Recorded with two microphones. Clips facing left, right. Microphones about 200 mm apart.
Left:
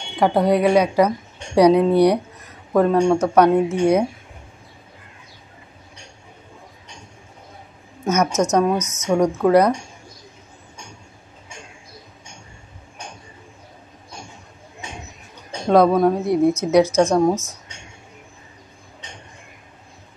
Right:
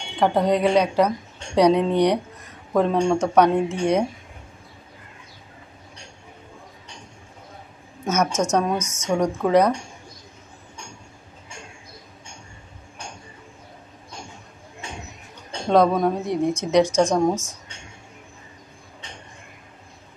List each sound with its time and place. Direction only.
0.1 s a woman's voice: 10° left (ahead or behind)
8.0 s a sound: 10° left (ahead or behind)
8.3 s a woman's voice: 10° right (ahead or behind)
9.1 s a woman's voice: 5° left (ahead or behind)
15.7 s a woman's voice: 10° left (ahead or behind)
16.8 s a woman's voice: 10° right (ahead or behind)
17.1 s a woman's voice: 10° left (ahead or behind)